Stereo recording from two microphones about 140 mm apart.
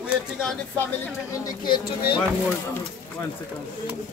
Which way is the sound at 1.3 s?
30° left (ahead or behind).